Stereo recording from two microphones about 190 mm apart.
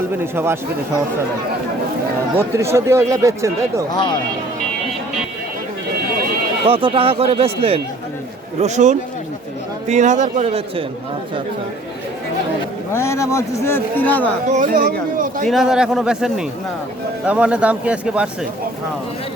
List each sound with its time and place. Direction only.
0.3 s speech: 15° right (ahead or behind)
2.4 s speech: 15° right (ahead or behind)
3.9 s speech: 25° left (ahead or behind)
6.7 s a man's voice: 30° right (ahead or behind)
12.9 s a man's voice: 15° left (ahead or behind)
14.4 s speech: 40° right (ahead or behind)
15.4 s a man's voice: centre (ahead or behind)